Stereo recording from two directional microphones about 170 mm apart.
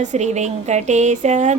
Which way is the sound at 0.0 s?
45° right (ahead or behind).